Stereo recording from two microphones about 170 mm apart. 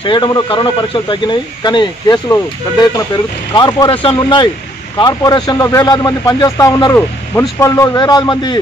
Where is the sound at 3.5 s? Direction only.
25° left (ahead or behind).